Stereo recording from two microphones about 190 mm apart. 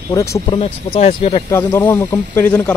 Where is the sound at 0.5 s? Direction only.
30° left (ahead or behind).